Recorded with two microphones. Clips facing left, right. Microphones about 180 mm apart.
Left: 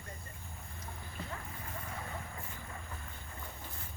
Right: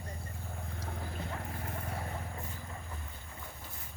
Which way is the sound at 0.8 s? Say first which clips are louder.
Right 4 dB; 70° right (ahead or behind).